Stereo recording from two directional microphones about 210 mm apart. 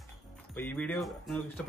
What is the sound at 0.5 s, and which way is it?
Speech, 5° left (ahead or behind).